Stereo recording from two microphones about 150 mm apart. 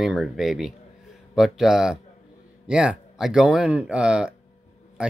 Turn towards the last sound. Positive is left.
turn(degrees=-5)  # may be behind; listen again after turning